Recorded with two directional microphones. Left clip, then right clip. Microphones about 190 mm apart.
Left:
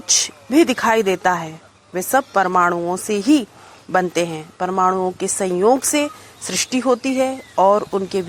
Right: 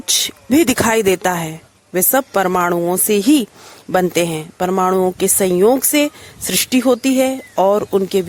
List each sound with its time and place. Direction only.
0.0 s speech: 45° right (ahead or behind)